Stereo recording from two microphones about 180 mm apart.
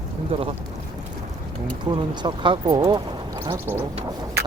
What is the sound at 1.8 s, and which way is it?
Speech, 25° right (ahead or behind).